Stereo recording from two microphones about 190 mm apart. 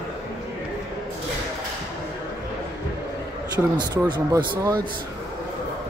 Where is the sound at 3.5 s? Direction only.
20° right (ahead or behind).